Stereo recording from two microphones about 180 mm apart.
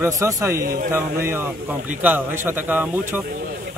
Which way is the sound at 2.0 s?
10° right (ahead or behind).